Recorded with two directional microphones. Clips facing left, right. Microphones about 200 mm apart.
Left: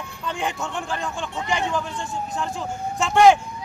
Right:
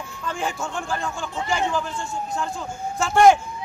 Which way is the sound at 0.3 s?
Centre (ahead or behind).